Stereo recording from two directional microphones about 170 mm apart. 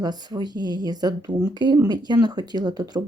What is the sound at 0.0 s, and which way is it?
Speech, 25° right (ahead or behind).